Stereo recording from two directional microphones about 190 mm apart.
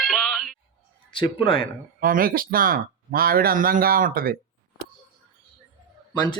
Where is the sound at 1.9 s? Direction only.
50° right (ahead or behind).